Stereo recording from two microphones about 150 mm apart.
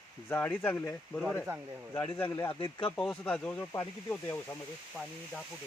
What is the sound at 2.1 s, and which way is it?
Speech, 10° left (ahead or behind).